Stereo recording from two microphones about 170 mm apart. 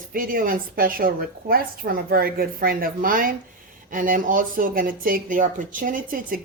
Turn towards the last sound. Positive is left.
turn(degrees=-55)  # may be behind; listen again after turning